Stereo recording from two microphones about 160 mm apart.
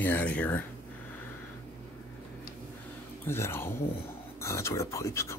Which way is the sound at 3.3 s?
15° left (ahead or behind).